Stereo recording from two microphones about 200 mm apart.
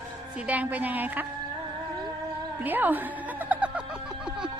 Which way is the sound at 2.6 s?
10° right (ahead or behind).